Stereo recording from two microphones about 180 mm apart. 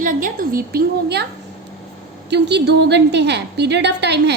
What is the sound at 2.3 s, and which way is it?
A woman's voice, 70° right (ahead or behind).